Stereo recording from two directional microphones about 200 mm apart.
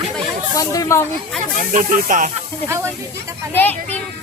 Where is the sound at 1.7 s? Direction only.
40° right (ahead or behind).